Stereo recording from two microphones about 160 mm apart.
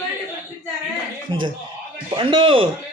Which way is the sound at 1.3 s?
30° right (ahead or behind).